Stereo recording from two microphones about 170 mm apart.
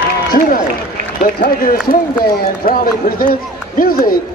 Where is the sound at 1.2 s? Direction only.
55° left (ahead or behind).